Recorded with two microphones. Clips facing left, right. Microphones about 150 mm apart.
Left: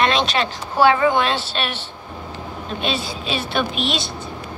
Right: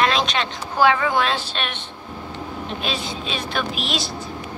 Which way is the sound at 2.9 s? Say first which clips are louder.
Left 4 dB; centre (ahead or behind).